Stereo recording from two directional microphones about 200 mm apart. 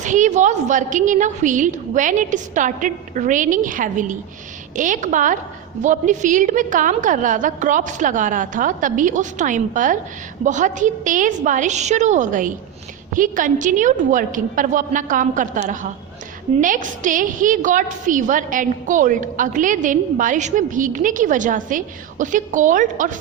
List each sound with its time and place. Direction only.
0.0 s a woman's voice: 40° right (ahead or behind)